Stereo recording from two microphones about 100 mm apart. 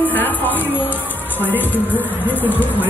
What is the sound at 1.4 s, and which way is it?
Music, 20° left (ahead or behind).